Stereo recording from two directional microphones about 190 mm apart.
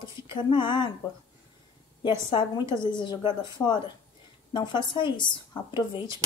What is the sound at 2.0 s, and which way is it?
A woman's voice, 25° left (ahead or behind).